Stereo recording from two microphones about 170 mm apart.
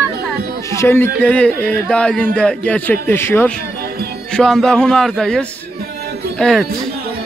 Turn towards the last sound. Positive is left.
turn(degrees=0)  # may be behind; listen again after turning